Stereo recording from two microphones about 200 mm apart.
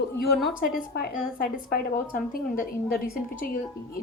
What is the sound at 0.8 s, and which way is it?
A woman's voice, 50° left (ahead or behind).